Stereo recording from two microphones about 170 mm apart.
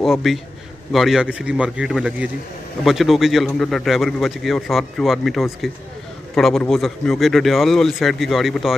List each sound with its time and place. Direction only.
0.0 s a man's voice: centre (ahead or behind)